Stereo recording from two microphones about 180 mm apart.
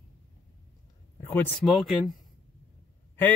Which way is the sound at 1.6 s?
Centre (ahead or behind).